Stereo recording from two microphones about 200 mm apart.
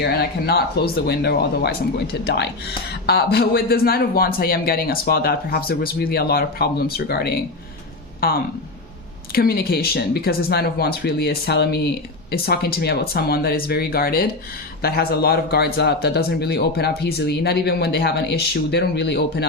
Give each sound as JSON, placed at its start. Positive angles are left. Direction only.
{"t": 0.0, "sound": "a man's voice", "side_deg": 50}
{"t": 9.3, "sound": "a man's voice", "side_deg": 50}